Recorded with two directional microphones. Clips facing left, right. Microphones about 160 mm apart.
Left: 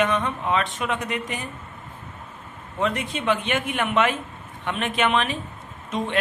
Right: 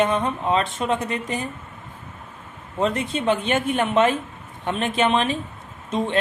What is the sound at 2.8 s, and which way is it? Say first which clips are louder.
Speech: right 3 dB; 30° right (ahead or behind).